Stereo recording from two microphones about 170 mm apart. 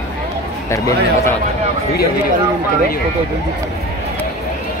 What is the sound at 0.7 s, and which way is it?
Speech, 15° left (ahead or behind).